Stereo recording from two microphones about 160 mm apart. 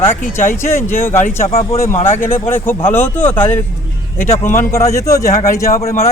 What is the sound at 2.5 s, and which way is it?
A man's voice, 15° left (ahead or behind).